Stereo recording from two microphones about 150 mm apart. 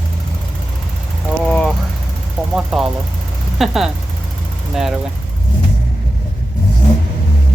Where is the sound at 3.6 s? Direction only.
Centre (ahead or behind).